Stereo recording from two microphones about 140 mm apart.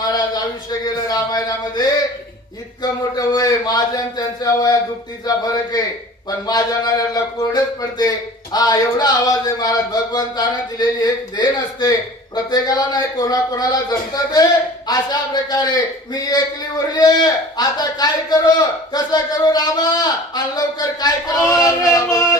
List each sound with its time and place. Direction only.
0.0 s speech: 30° left (ahead or behind)